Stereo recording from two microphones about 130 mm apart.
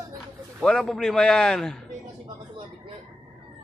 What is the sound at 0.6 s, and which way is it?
A man's voice, 5° left (ahead or behind).